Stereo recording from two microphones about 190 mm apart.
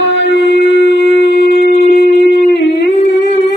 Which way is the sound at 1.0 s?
60° left (ahead or behind).